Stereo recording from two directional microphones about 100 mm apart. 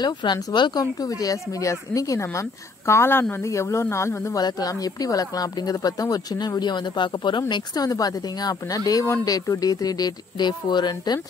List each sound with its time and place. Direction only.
0.0 s speech: 45° left (ahead or behind); by 4.4 s 30° left (ahead or behind)
4.4 s speech: 40° left (ahead or behind)